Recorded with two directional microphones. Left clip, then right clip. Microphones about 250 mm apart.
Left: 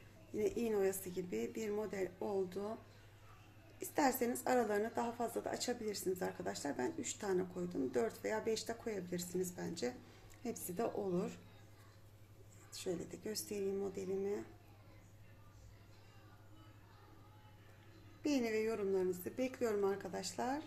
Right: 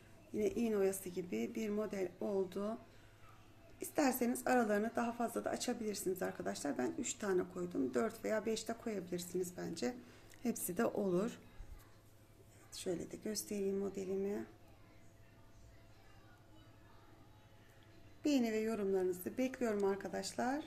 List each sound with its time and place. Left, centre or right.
0.3 s a woman's voice: centre
3.8 s a woman's voice: centre
10.4 s a woman's voice: right
12.7 s a woman's voice: centre
18.2 s a woman's voice: centre